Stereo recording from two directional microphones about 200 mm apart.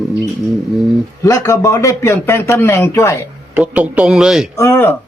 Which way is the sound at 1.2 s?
15° left (ahead or behind).